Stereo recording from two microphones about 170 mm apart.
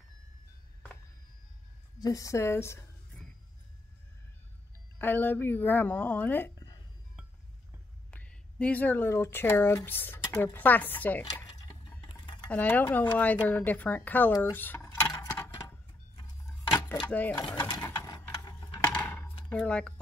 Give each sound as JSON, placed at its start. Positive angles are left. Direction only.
{"t": 2.0, "sound": "speech", "side_deg": 20}
{"t": 4.9, "sound": "speech", "side_deg": 10}
{"t": 8.1, "sound": "speech", "side_deg": 5}
{"t": 12.0, "sound": "a sound", "side_deg": 25}
{"t": 12.4, "sound": "speech", "side_deg": 10}
{"t": 14.3, "sound": "mechanisms", "side_deg": 10}
{"t": 17.1, "sound": "speech", "side_deg": 10}
{"t": 17.5, "sound": "ratchet", "side_deg": 25}
{"t": 18.9, "sound": "a sound", "side_deg": 10}
{"t": 19.5, "sound": "speech", "side_deg": 5}